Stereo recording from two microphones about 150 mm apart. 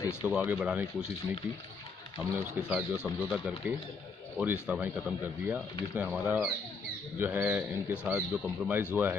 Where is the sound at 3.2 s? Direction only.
10° right (ahead or behind).